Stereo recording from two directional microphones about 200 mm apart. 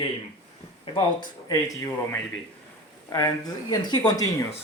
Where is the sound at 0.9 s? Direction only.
20° left (ahead or behind).